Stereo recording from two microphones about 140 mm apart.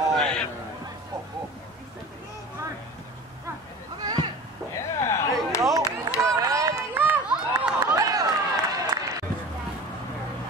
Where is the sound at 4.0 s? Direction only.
25° right (ahead or behind).